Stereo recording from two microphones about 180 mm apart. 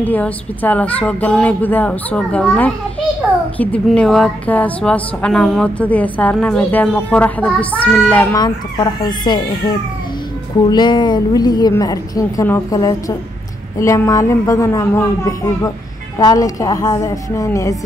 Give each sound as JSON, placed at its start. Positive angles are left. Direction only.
{"t": 0.0, "sound": "a woman's voice", "side_deg": 10}
{"t": 8.4, "sound": "a woman's voice", "side_deg": 25}
{"t": 10.7, "sound": "a woman's voice", "side_deg": 25}